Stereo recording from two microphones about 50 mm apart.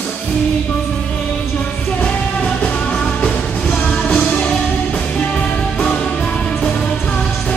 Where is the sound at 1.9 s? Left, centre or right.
Left.